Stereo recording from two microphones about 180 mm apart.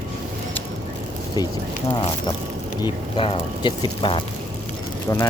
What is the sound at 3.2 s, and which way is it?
Speech, 30° left (ahead or behind).